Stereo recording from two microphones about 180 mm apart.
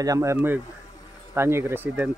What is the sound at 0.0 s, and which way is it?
Speech, 20° right (ahead or behind).